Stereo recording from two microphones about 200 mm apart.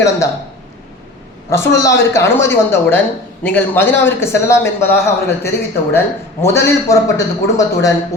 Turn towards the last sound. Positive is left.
turn(degrees=15)  # may be behind; listen again after turning